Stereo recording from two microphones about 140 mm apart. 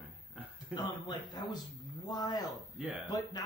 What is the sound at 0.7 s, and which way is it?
Speech, 30° left (ahead or behind).